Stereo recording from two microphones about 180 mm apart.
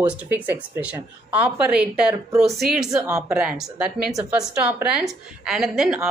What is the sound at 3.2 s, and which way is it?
Speech, 5° right (ahead or behind).